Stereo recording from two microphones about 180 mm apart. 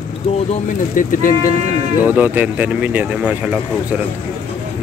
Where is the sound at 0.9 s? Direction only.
50° left (ahead or behind).